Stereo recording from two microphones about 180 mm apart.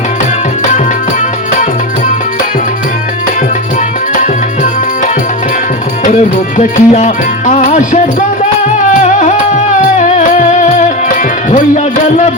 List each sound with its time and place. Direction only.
4.1 s music: 45° left (ahead or behind)
6.6 s music: 40° left (ahead or behind)
10.2 s music: 45° left (ahead or behind)